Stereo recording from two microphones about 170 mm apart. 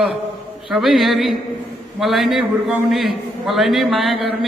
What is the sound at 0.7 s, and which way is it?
A man's voice, centre (ahead or behind).